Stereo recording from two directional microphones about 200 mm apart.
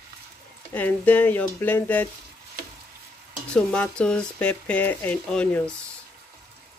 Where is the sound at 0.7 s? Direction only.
10° left (ahead or behind).